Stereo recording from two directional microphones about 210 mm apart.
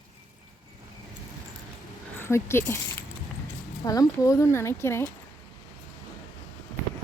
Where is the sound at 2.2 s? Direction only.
10° left (ahead or behind).